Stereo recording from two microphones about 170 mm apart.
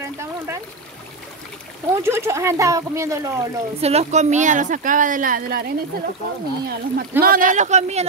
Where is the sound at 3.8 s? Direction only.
40° right (ahead or behind); by 5.7 s 60° right (ahead or behind).